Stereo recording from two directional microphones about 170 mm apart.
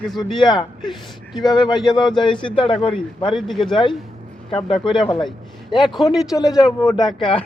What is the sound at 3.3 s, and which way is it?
Speech, centre (ahead or behind).